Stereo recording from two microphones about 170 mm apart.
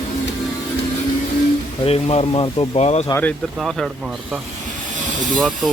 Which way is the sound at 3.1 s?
15° left (ahead or behind).